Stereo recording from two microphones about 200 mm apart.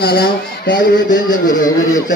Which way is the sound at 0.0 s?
50° left (ahead or behind).